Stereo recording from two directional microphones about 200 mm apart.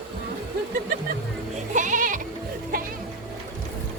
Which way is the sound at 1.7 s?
40° right (ahead or behind).